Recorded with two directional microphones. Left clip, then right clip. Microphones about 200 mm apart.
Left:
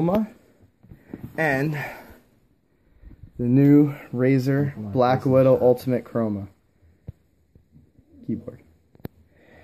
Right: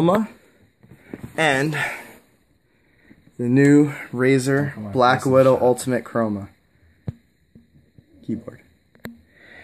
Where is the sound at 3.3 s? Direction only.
10° right (ahead or behind).